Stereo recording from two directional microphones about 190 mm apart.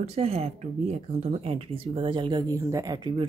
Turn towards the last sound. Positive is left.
turn(degrees=-25)  # may be behind; listen again after turning